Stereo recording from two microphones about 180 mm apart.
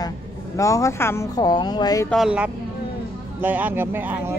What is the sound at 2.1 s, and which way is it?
Speech, 5° right (ahead or behind).